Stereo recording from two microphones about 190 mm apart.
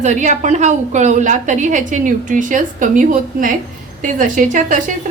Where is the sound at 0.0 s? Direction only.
40° right (ahead or behind).